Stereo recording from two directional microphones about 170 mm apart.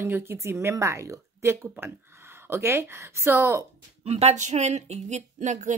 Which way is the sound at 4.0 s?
40° right (ahead or behind).